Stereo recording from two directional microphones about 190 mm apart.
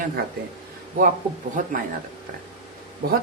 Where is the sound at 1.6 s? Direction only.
45° right (ahead or behind).